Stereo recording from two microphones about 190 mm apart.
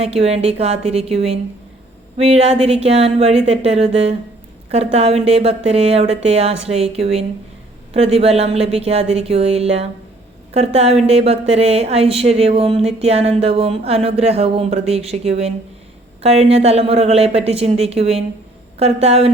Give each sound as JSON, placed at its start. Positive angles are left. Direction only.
{"t": 0.0, "sound": "a woman's voice", "side_deg": -30}